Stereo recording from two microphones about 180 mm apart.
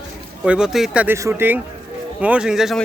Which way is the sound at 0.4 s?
5° right (ahead or behind).